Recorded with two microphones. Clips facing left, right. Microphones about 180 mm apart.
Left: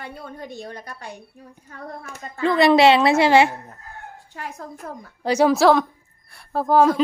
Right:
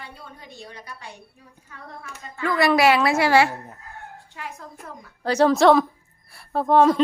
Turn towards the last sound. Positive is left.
turn(degrees=0)  # may be behind; listen again after turning